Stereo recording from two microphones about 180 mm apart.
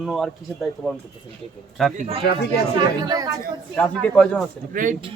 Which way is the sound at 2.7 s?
20° right (ahead or behind).